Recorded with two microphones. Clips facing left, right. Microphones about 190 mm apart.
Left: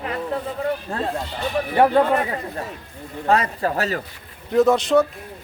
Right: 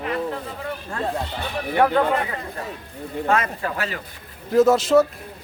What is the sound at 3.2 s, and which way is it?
Speech, 35° left (ahead or behind).